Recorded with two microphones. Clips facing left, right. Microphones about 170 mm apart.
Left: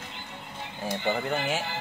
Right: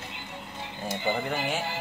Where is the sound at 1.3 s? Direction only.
Centre (ahead or behind).